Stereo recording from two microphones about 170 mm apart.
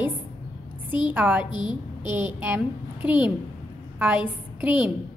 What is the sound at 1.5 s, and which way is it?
Speech, 25° left (ahead or behind).